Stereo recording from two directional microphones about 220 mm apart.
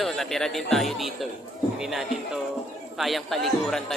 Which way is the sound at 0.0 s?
Centre (ahead or behind).